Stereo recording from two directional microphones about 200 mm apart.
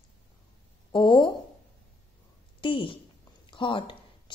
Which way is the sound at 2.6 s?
25° left (ahead or behind).